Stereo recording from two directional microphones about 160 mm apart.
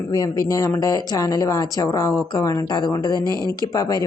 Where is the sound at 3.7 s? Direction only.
25° left (ahead or behind).